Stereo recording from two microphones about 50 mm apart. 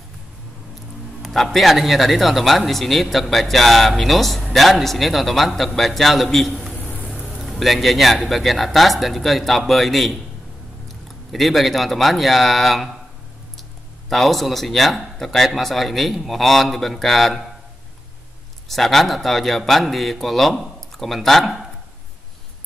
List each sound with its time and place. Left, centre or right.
1.2 s speech: centre
6.7 s a sound: left
7.2 s a sound: centre
8.3 s speech: centre
11.3 s speech: centre
18.7 s speech: centre